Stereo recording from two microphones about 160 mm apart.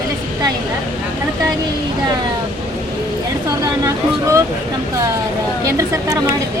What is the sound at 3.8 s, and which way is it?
Speech, 20° right (ahead or behind).